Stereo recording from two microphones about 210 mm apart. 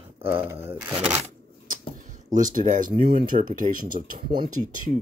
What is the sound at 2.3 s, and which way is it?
Speech, 35° right (ahead or behind).